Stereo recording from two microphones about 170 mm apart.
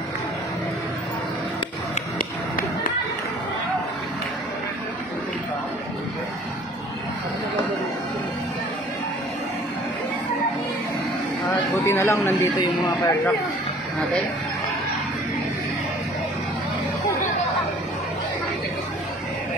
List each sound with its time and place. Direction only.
11.4 s speech: 15° left (ahead or behind)